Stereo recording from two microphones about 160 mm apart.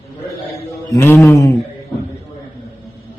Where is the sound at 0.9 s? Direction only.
15° left (ahead or behind).